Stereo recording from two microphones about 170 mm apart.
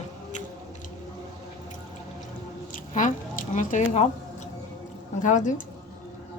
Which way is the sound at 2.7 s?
50° left (ahead or behind).